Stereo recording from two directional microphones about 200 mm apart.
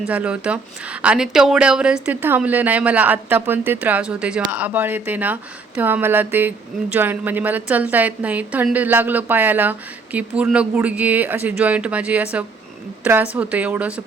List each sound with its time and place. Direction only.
0.1 s a woman's voice: 5° right (ahead or behind)